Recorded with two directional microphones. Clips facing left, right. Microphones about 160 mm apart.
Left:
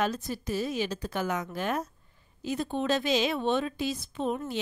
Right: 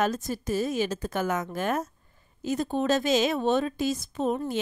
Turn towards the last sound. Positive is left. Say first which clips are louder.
# right 3 dB
turn(degrees=-45)  # may be behind; listen again after turning